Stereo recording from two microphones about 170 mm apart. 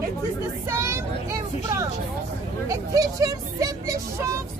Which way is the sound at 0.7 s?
15° right (ahead or behind).